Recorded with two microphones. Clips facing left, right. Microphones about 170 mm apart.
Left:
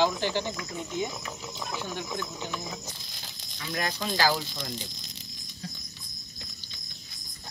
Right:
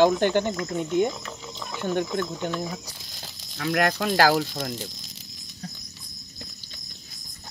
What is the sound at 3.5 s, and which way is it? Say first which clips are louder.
Speech: right 9 dB; 65° right (ahead or behind).